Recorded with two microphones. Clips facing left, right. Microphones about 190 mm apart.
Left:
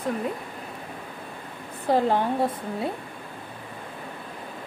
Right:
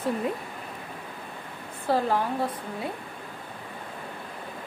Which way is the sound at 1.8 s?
25° left (ahead or behind).